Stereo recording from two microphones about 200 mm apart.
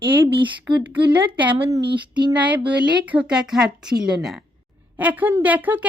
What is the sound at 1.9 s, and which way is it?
Female singing, 25° right (ahead or behind).